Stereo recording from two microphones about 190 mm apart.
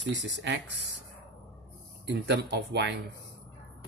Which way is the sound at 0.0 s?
70° right (ahead or behind).